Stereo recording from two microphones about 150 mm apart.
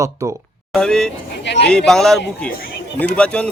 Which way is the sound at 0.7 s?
5° left (ahead or behind).